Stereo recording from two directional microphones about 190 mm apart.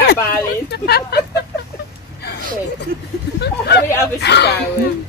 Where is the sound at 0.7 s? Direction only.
60° left (ahead or behind).